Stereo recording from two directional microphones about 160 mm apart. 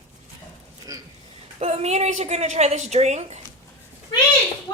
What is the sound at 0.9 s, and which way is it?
Speech, 20° right (ahead or behind).